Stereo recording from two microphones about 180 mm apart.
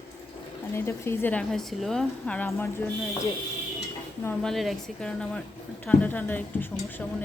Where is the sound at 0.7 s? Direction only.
15° left (ahead or behind).